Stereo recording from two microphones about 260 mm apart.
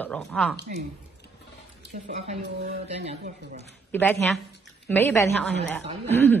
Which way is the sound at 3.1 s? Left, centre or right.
Right.